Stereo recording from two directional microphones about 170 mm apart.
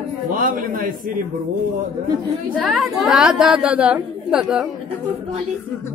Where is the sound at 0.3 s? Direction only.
50° right (ahead or behind).